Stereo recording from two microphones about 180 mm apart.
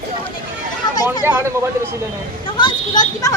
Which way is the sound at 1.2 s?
15° right (ahead or behind).